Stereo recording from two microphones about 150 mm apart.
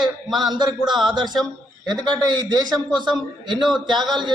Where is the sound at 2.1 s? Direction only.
25° right (ahead or behind).